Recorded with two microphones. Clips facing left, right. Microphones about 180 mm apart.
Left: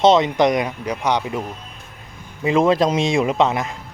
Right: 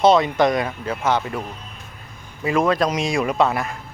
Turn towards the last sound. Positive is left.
turn(degrees=20)  # may be behind; listen again after turning